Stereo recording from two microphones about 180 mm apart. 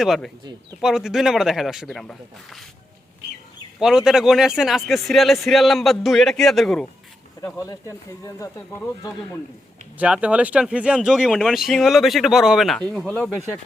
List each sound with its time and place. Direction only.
0.0 s speech: centre (ahead or behind)
3.8 s speech: 5° right (ahead or behind)
7.4 s speech: 20° left (ahead or behind)
10.0 s speech: 5° right (ahead or behind)